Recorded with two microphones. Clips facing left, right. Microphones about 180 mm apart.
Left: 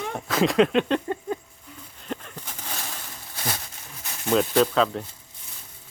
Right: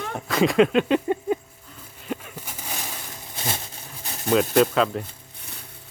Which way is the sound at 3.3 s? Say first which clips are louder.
Right 1 dB; 25° right (ahead or behind).